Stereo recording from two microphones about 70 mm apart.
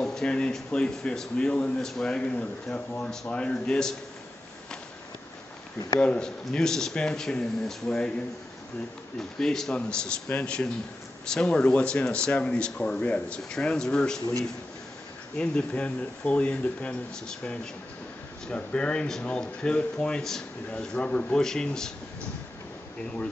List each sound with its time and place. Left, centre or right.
0.0 s speech: centre
5.9 s speech: centre
9.4 s speech: centre
15.3 s speech: centre